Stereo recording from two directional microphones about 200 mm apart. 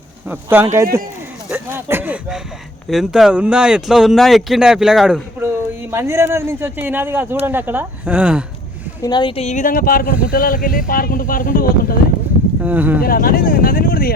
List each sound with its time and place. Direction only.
0.3 s speech: 10° right (ahead or behind)
9.0 s speech: 20° left (ahead or behind); by 11.9 s 45° left (ahead or behind)
12.6 s speech: 10° right (ahead or behind)
13.0 s speech: 45° left (ahead or behind)